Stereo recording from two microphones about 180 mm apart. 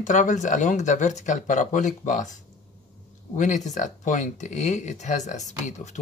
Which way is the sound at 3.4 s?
45° left (ahead or behind).